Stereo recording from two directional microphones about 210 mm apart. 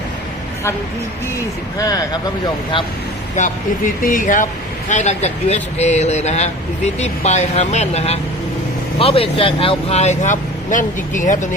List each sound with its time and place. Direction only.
3.3 s speech: 40° left (ahead or behind)